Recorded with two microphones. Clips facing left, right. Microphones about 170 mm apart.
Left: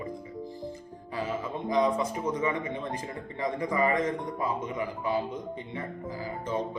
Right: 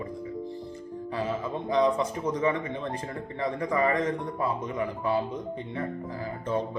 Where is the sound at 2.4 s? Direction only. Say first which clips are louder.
Right 3 dB; 35° right (ahead or behind).